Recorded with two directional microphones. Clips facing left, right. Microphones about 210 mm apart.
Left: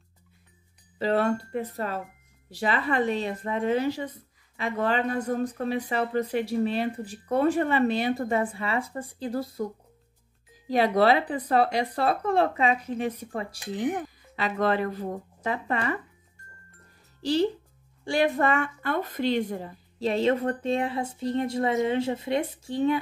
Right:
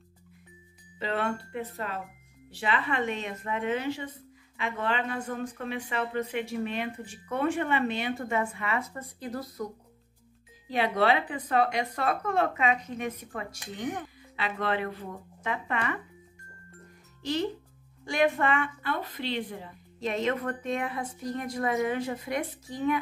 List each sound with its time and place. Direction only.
0.9 s speech: 40° left (ahead or behind)
10.7 s speech: 40° left (ahead or behind)
17.2 s a woman's voice: 35° left (ahead or behind)
20.0 s a woman's voice: 30° left (ahead or behind)